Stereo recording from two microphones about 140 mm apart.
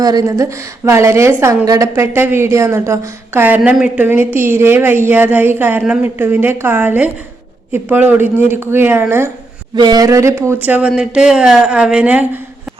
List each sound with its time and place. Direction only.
0.0 s a woman's voice: 25° right (ahead or behind)
9.7 s a woman's voice: 30° right (ahead or behind); by 12.4 s 10° right (ahead or behind)